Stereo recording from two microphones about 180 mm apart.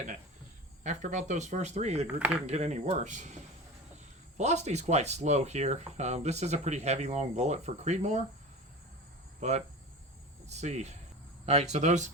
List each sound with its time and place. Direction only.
0.9 s speech: 40° right (ahead or behind)
2.0 s speech: 10° right (ahead or behind)
2.5 s speech: 40° right (ahead or behind)
4.4 s speech: 40° right (ahead or behind)
9.4 s speech: 40° right (ahead or behind)